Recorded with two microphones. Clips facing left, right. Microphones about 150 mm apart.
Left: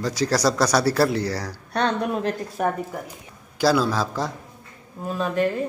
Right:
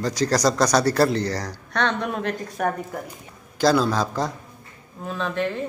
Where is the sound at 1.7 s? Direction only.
35° left (ahead or behind).